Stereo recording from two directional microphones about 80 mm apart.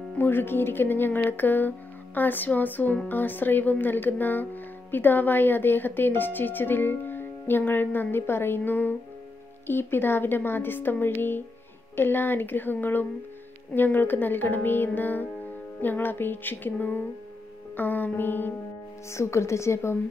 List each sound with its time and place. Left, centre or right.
0.2 s speech: left
19.0 s a woman's voice: left